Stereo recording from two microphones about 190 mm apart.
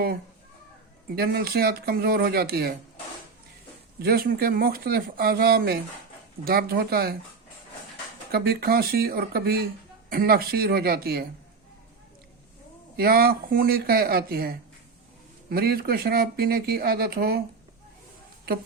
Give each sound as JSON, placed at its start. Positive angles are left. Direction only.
{"t": 1.1, "sound": "speech", "side_deg": -55}
{"t": 4.0, "sound": "speech", "side_deg": -50}
{"t": 8.3, "sound": "speech", "side_deg": -55}
{"t": 13.0, "sound": "speech", "side_deg": -50}